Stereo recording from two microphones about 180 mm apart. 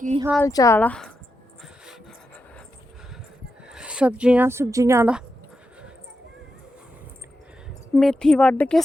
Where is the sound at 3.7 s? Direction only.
5° right (ahead or behind).